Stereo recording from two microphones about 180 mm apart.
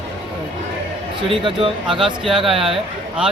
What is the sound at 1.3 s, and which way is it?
Speech, 30° right (ahead or behind).